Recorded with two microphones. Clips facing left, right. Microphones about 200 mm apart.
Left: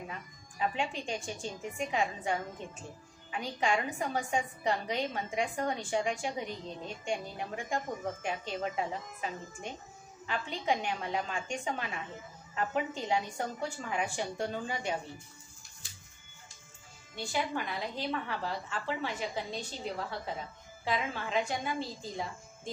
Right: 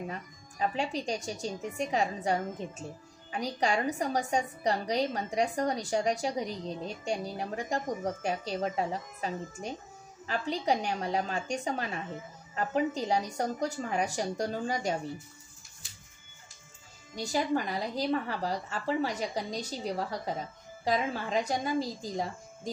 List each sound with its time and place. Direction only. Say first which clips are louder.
0.1 s a woman's voice: right 4 dB; 40° right (ahead or behind)
17.1 s a woman's voice: right 5 dB; 40° right (ahead or behind)